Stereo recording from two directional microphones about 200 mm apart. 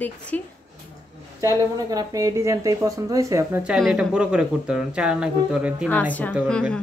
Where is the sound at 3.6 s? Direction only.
Centre (ahead or behind).